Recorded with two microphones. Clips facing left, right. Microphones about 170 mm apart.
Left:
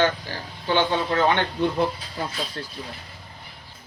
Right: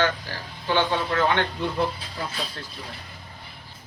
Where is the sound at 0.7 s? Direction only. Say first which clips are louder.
Left 1 dB; 30° left (ahead or behind).